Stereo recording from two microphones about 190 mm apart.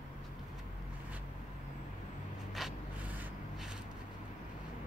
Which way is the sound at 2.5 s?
5° right (ahead or behind).